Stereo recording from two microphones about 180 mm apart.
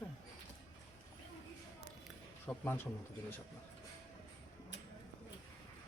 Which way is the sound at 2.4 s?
10° left (ahead or behind).